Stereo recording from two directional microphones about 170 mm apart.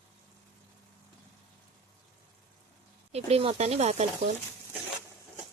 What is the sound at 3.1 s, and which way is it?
Speech, 35° right (ahead or behind).